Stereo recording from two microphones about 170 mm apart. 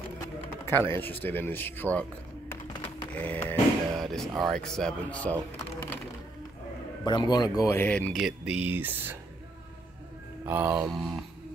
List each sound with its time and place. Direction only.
0.4 s speech: 15° left (ahead or behind)
2.7 s computer keyboard: 25° left (ahead or behind)
3.1 s a sound: 10° left (ahead or behind)
4.4 s speech: 5° left (ahead or behind)
7.1 s speech: 25° left (ahead or behind); by 8.2 s 10° left (ahead or behind)
8.2 s speech: 5° right (ahead or behind)
10.4 s speech: 10° right (ahead or behind)
10.9 s speech: centre (ahead or behind)